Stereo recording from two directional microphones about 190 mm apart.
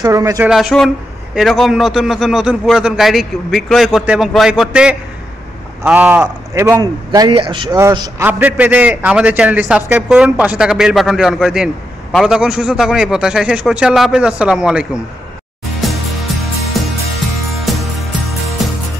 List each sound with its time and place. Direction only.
0.0 s a man's voice: 15° right (ahead or behind)
0.5 s a man's voice: centre (ahead or behind)
15.8 s music: centre (ahead or behind)